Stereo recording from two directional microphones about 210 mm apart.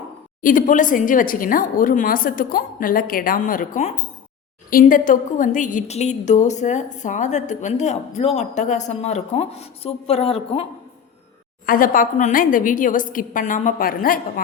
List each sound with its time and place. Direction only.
0.4 s a woman's voice: 40° left (ahead or behind)
11.6 s a woman's voice: 40° left (ahead or behind)